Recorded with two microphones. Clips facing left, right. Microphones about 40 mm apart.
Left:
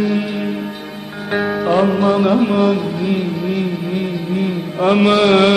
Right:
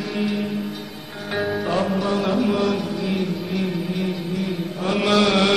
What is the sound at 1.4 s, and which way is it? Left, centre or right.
Music, centre.